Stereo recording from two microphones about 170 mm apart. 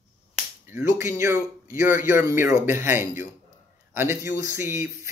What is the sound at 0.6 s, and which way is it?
Speech, 15° right (ahead or behind).